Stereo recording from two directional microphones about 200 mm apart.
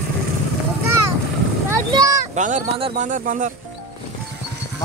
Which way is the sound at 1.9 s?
20° right (ahead or behind).